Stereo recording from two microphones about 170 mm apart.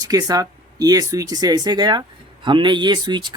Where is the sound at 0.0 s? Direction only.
20° right (ahead or behind).